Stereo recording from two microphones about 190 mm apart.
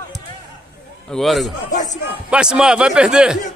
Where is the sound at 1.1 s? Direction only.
Centre (ahead or behind).